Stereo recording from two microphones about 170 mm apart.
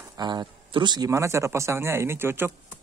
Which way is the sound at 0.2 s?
25° right (ahead or behind).